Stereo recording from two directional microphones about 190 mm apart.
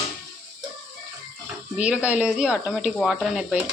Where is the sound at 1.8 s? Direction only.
5° right (ahead or behind).